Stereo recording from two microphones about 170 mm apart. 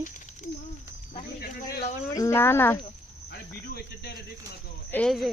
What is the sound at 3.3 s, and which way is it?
Cricket, 75° left (ahead or behind).